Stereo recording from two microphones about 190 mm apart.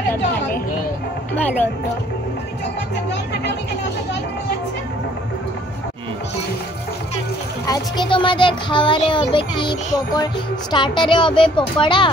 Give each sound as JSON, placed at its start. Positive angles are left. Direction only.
{"t": 7.6, "sound": "speech", "side_deg": 20}